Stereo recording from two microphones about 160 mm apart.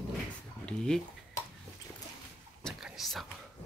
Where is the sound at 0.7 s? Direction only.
5° left (ahead or behind).